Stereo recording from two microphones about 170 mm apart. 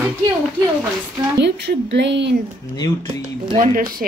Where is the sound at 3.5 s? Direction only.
55° right (ahead or behind).